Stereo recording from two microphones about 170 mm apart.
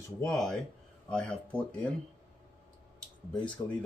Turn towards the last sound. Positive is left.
turn(degrees=5)  # may be behind; listen again after turning